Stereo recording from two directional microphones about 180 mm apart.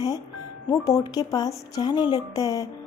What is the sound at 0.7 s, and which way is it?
Speech, 20° left (ahead or behind).